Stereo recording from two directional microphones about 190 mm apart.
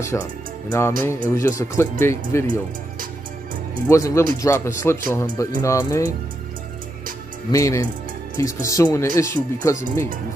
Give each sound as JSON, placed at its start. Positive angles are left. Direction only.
{"t": 0.0, "sound": "speech", "side_deg": 15}
{"t": 3.9, "sound": "speech", "side_deg": 15}
{"t": 7.5, "sound": "speech", "side_deg": 15}